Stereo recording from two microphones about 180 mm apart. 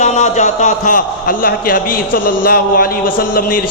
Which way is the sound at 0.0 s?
40° left (ahead or behind).